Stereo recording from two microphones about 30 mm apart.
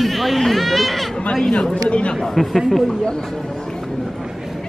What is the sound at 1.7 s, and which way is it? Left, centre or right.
Speech, left.